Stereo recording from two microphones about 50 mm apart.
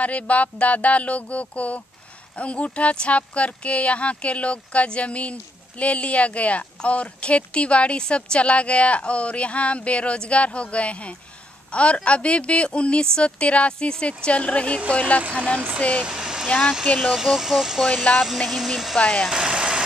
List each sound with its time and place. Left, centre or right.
0.0 s speech: left
16.1 s vehicle: centre
16.4 s speech: left
17.1 s speech: centre
18.1 s speech: left
18.5 s speech: centre
18.9 s speech: left
19.3 s vehicle: centre